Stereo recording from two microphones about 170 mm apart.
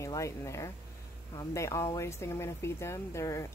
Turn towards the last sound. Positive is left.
turn(degrees=15)  # may be behind; listen again after turning